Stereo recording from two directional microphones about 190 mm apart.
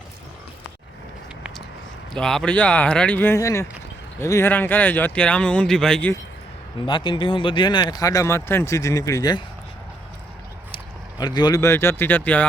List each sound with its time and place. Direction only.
2.1 s speech: 5° left (ahead or behind)
6.8 s speech: 25° left (ahead or behind)
11.2 s speech: 20° left (ahead or behind)